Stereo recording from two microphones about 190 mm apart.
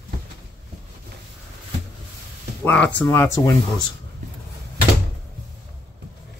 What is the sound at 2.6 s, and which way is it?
Speech, 5° left (ahead or behind).